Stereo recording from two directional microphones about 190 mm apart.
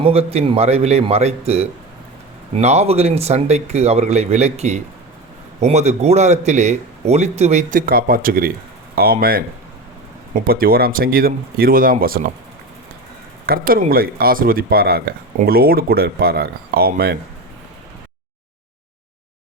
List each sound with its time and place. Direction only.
0.0 s a man's voice: 30° right (ahead or behind); by 9.1 s 50° right (ahead or behind)
10.3 s speech: 50° right (ahead or behind)
13.4 s speech: 50° right (ahead or behind)